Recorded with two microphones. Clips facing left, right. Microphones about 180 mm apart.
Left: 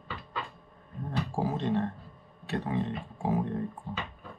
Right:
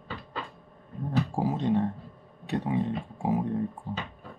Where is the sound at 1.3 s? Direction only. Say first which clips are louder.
Right 2 dB; 15° right (ahead or behind).